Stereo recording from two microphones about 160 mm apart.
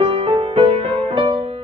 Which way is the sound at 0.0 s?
35° right (ahead or behind).